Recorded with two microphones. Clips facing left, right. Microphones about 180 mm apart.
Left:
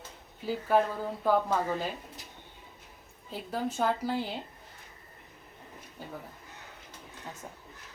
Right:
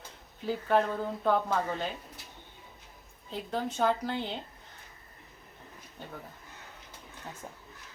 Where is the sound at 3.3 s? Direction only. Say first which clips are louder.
Even; 5° left (ahead or behind).